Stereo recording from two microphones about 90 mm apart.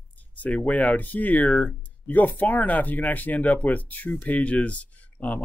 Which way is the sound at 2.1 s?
20° left (ahead or behind).